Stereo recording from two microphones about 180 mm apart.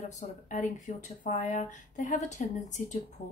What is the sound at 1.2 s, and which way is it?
Speech, 45° left (ahead or behind).